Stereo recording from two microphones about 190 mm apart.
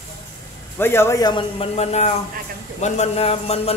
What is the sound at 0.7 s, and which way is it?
A man's voice, 10° left (ahead or behind).